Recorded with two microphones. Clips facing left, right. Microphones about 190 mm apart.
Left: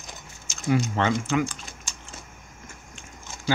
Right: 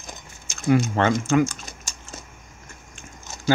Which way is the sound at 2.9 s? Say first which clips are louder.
Right 4 dB; 45° right (ahead or behind).